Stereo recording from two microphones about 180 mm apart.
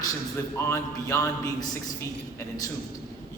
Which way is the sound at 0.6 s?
15° left (ahead or behind).